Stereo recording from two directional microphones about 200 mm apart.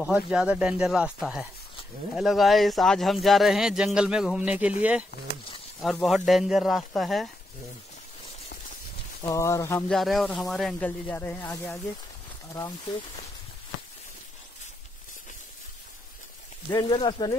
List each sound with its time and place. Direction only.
0.0 s speech: 5° right (ahead or behind)
9.2 s speech: 15° left (ahead or behind)
9.9 s speech: centre (ahead or behind)
16.7 s speech: 25° left (ahead or behind)